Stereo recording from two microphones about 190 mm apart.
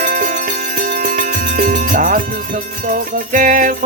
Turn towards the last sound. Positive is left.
turn(degrees=-45)  # may be behind; listen again after turning